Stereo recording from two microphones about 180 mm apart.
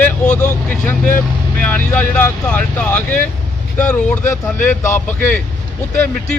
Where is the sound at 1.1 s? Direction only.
10° left (ahead or behind).